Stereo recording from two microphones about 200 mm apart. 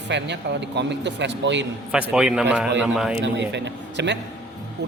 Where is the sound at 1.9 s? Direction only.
5° right (ahead or behind).